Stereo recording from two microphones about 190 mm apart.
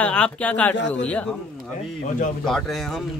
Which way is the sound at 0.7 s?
70° left (ahead or behind).